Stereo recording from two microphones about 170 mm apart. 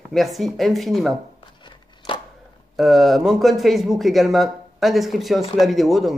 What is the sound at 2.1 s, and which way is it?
Chopping, 30° left (ahead or behind).